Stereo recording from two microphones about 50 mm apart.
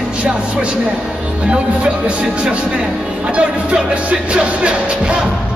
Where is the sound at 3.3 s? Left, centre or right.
Right.